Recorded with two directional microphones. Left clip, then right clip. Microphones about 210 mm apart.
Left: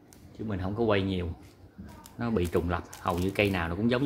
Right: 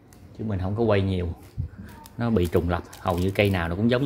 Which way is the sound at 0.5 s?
15° right (ahead or behind).